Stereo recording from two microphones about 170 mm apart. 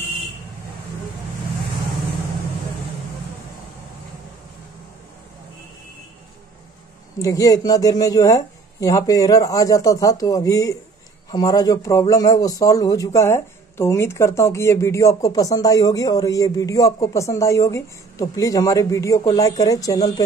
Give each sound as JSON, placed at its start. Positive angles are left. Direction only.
{"t": 7.2, "sound": "speech", "side_deg": 20}